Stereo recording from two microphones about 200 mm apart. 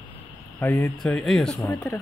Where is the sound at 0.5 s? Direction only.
15° left (ahead or behind).